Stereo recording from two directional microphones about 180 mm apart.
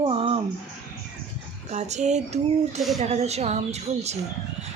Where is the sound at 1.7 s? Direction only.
40° right (ahead or behind).